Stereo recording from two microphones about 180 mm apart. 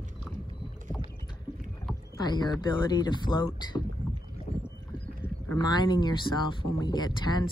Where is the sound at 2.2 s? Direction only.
20° left (ahead or behind).